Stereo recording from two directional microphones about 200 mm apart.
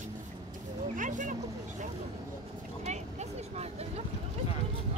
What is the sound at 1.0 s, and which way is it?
Vehicle, 40° right (ahead or behind).